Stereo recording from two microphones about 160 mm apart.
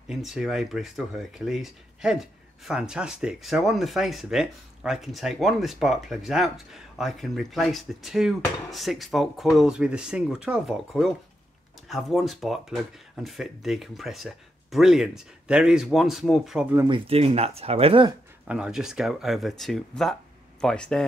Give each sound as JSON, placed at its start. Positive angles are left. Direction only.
{"t": 0.1, "sound": "speech", "side_deg": 0}
{"t": 16.7, "sound": "speech", "side_deg": -25}
{"t": 17.1, "sound": "speech", "side_deg": -40}
{"t": 18.5, "sound": "speech", "side_deg": -5}